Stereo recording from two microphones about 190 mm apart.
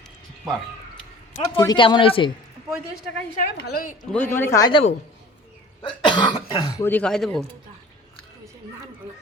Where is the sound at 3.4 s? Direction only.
55° left (ahead or behind).